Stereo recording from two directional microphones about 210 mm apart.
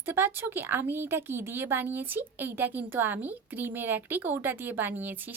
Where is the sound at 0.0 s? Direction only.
10° right (ahead or behind).